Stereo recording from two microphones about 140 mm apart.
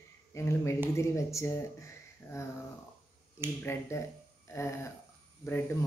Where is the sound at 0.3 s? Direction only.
20° left (ahead or behind).